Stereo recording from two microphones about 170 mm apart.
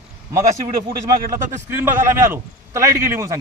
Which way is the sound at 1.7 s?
15° right (ahead or behind).